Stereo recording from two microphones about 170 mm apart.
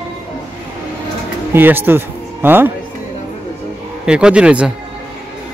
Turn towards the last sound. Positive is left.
turn(degrees=-5)  # may be behind; listen again after turning